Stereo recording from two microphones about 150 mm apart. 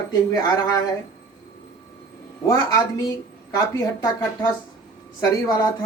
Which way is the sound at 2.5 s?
25° left (ahead or behind).